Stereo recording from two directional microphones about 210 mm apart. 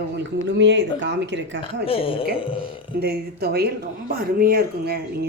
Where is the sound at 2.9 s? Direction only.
50° right (ahead or behind).